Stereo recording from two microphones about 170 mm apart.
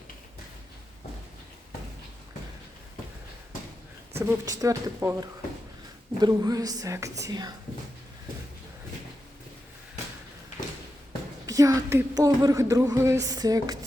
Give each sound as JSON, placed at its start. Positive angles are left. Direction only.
{"t": 4.1, "sound": "speech", "side_deg": -15}
{"t": 11.4, "sound": "speech", "side_deg": -20}